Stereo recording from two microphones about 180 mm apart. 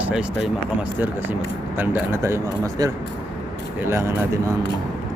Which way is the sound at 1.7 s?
15° right (ahead or behind).